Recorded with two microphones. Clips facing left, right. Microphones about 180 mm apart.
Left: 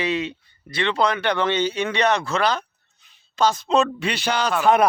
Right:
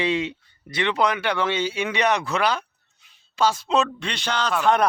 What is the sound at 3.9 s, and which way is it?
Speech, 5° left (ahead or behind).